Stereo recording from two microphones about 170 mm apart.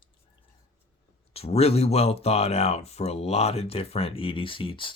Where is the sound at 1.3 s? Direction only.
35° left (ahead or behind).